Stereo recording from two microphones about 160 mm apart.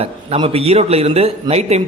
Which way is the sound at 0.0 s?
35° right (ahead or behind).